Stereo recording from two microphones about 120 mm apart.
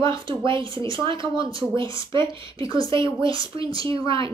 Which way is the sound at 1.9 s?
25° left (ahead or behind).